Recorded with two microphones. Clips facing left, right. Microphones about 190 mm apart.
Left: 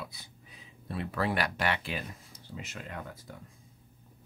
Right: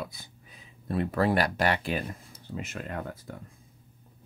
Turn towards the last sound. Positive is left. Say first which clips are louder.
# right 6 dB
turn(degrees=-50)  # may be behind; listen again after turning